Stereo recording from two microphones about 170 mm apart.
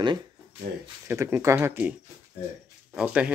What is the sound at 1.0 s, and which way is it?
Speech, 15° right (ahead or behind).